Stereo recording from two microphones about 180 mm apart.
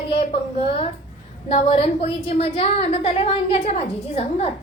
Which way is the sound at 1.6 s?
35° left (ahead or behind).